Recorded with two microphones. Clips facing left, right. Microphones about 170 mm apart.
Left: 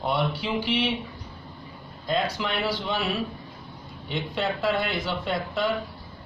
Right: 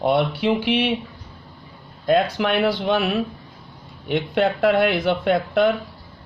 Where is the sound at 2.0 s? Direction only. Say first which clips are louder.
Right 8 dB; 60° right (ahead or behind).